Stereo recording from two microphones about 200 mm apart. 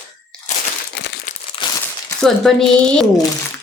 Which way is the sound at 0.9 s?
60° left (ahead or behind).